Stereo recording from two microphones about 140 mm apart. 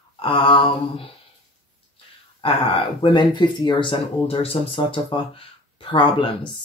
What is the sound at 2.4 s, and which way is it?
Speech, 40° left (ahead or behind).